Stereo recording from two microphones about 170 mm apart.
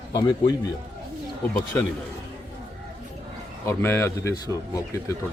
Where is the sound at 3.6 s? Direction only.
15° left (ahead or behind).